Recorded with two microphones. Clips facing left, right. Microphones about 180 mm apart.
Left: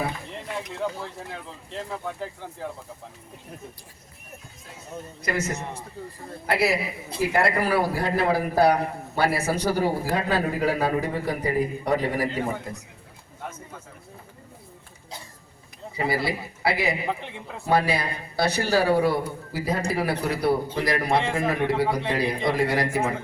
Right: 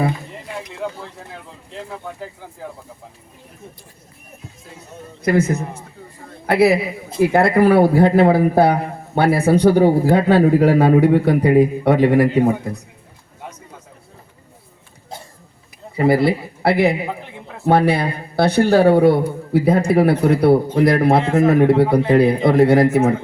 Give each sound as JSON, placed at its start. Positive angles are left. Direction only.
{"t": 1.7, "sound": "speech", "side_deg": 0}
{"t": 5.2, "sound": "speech", "side_deg": -55}
{"t": 16.0, "sound": "speech", "side_deg": -55}